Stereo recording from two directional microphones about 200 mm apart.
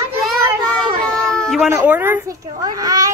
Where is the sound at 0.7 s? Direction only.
5° left (ahead or behind).